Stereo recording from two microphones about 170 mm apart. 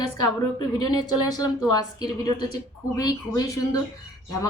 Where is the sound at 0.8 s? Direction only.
25° left (ahead or behind).